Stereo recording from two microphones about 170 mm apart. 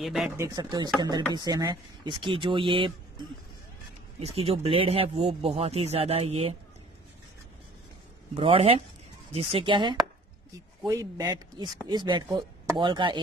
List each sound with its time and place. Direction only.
0.0 s speech: centre (ahead or behind)
0.4 s speech: 25° right (ahead or behind)
4.2 s speech: 35° right (ahead or behind)
8.4 s speech: 35° right (ahead or behind)